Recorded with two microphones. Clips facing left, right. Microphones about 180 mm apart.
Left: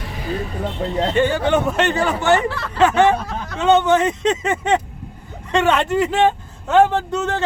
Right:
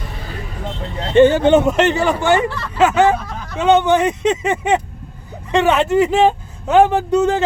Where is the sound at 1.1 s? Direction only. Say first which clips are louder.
Right 9 dB; 25° right (ahead or behind).